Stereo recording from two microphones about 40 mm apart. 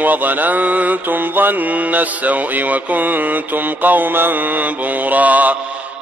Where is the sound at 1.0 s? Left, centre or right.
Right.